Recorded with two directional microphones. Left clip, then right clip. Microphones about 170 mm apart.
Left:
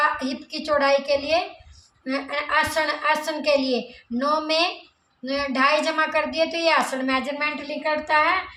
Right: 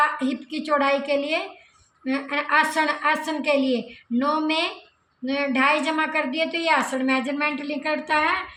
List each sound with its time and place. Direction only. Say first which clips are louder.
0.0 s a woman's voice: even; 40° left (ahead or behind)